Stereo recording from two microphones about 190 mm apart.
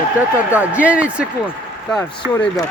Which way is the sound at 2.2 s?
15° right (ahead or behind).